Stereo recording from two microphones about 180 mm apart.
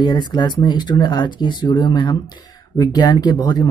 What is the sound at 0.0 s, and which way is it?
Speech, 25° left (ahead or behind).